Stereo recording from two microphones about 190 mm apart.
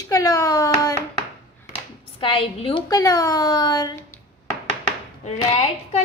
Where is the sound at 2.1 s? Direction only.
30° left (ahead or behind).